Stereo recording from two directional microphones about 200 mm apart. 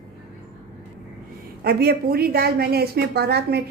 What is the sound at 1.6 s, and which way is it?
A woman's voice, 50° right (ahead or behind).